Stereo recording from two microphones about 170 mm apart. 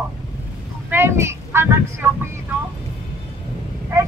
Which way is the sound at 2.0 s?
10° right (ahead or behind).